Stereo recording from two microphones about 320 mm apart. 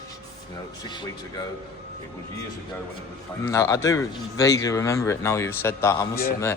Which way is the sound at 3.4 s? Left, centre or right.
Centre.